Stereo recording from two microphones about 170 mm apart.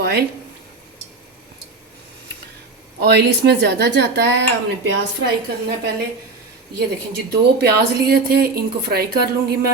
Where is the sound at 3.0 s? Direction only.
75° right (ahead or behind); by 4.4 s 90° right.